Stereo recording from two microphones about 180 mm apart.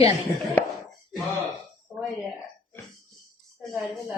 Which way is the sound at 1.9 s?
5° right (ahead or behind).